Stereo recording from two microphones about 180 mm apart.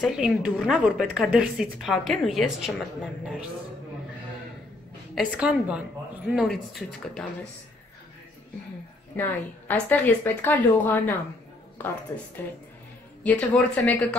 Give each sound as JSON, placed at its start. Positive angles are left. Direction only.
{"t": 0.0, "sound": "a woman's voice", "side_deg": -5}
{"t": 5.1, "sound": "a woman's voice", "side_deg": -5}
{"t": 9.1, "sound": "a woman's voice", "side_deg": 10}
{"t": 13.2, "sound": "a woman's voice", "side_deg": 10}